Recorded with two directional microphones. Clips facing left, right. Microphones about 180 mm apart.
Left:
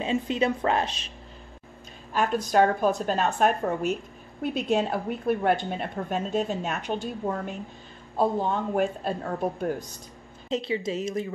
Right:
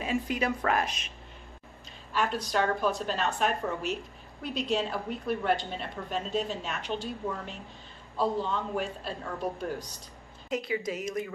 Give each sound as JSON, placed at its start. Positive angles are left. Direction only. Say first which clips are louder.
{"t": 0.0, "sound": "a woman's voice", "louder": "left 4 dB", "side_deg": 25}
{"t": 2.1, "sound": "a woman's voice", "louder": "left 6 dB", "side_deg": 45}
{"t": 10.5, "sound": "a woman's voice", "louder": "left 4 dB", "side_deg": 25}